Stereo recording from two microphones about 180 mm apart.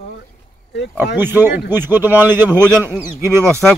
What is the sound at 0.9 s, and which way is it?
Speech, 10° right (ahead or behind).